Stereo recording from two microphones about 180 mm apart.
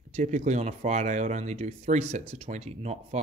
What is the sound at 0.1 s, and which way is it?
Speech, 40° right (ahead or behind).